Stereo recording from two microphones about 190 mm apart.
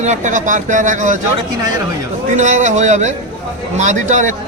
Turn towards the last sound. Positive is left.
turn(degrees=-40)  # may be behind; listen again after turning